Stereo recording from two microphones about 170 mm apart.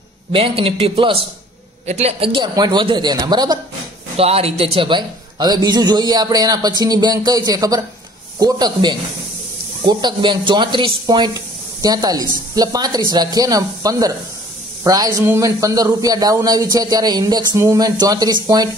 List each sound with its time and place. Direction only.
0.3 s a man's voice: 35° right (ahead or behind)
4.2 s a man's voice: 35° right (ahead or behind)